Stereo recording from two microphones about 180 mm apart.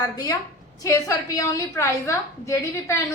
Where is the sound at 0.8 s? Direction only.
20° left (ahead or behind).